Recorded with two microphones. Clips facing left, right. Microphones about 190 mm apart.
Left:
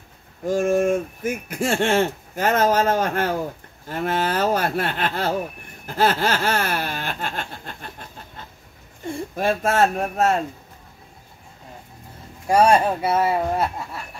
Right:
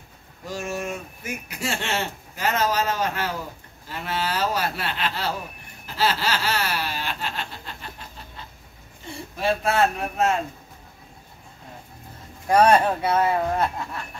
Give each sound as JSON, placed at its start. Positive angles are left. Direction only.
{"t": 0.5, "sound": "speech", "side_deg": 50}
{"t": 5.9, "sound": "laughter", "side_deg": 50}
{"t": 9.0, "sound": "speech", "side_deg": 50}
{"t": 12.4, "sound": "speech", "side_deg": 5}